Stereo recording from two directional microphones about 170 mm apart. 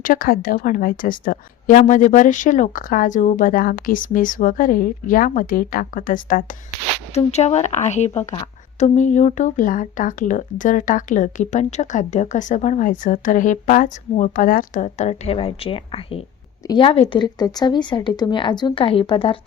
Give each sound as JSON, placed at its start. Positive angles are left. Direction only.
{"t": 0.0, "sound": "a woman's voice", "side_deg": 55}
{"t": 7.1, "sound": "speech", "side_deg": 40}